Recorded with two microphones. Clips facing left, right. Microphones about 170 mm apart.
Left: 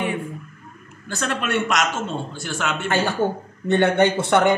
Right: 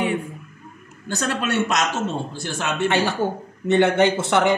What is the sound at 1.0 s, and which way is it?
Speech, 35° right (ahead or behind).